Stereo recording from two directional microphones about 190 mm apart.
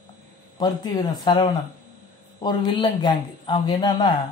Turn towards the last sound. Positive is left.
turn(degrees=20)  # may be behind; listen again after turning